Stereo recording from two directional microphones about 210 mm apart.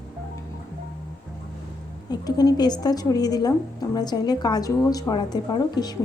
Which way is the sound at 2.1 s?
20° left (ahead or behind).